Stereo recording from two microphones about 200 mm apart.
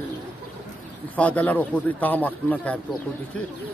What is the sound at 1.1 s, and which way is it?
Speech, 5° left (ahead or behind).